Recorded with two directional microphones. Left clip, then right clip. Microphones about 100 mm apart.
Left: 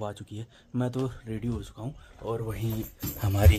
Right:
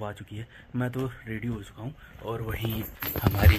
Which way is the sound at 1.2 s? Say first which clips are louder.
Right 1 dB; 30° left (ahead or behind).